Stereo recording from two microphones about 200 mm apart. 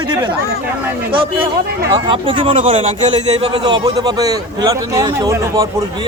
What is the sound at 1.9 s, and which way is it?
A man's voice, 25° right (ahead or behind).